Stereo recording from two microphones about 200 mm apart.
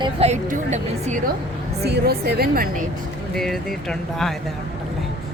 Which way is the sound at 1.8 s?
55° right (ahead or behind).